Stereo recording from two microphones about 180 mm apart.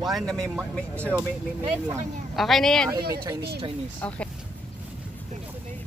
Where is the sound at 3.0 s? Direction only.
60° right (ahead or behind).